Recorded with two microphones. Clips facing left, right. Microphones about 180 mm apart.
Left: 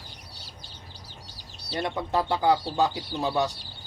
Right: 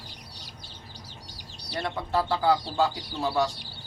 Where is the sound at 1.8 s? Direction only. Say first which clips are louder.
Left 1 dB; 20° left (ahead or behind).